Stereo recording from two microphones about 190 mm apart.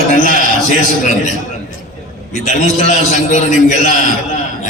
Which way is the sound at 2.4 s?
40° left (ahead or behind).